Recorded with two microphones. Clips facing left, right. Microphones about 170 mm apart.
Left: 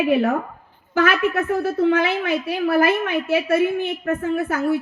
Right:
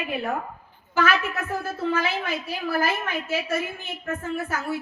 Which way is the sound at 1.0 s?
60° left (ahead or behind).